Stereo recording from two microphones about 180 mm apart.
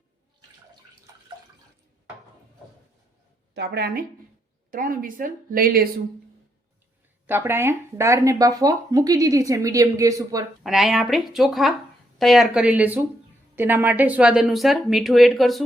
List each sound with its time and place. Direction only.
3.5 s a woman's voice: 70° right (ahead or behind)
4.7 s a woman's voice: 50° right (ahead or behind)
7.3 s speech: 10° right (ahead or behind)
10.6 s speech: centre (ahead or behind)